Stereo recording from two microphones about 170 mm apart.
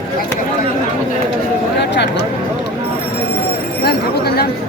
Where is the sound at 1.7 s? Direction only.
90° left.